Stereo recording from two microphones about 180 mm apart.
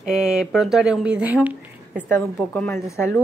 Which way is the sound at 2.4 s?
10° left (ahead or behind).